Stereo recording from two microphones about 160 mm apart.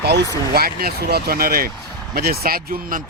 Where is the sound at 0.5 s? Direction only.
70° right (ahead or behind).